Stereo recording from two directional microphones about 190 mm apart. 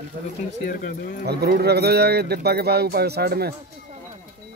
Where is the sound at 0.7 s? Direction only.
45° left (ahead or behind).